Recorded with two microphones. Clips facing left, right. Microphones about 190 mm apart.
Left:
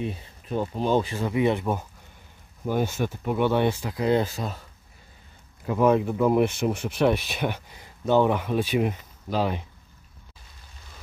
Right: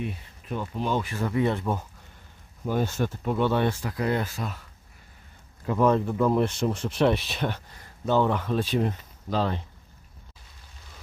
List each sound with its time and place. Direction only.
0.0 s speech: 30° left (ahead or behind); by 4.2 s 15° left (ahead or behind)
4.2 s speech: 25° left (ahead or behind)
5.8 s speech: 10° left (ahead or behind)